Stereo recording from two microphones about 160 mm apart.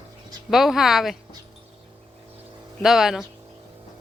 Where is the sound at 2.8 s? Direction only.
Centre (ahead or behind).